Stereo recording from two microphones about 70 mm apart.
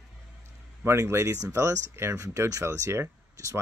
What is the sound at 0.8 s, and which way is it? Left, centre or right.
Speech, right.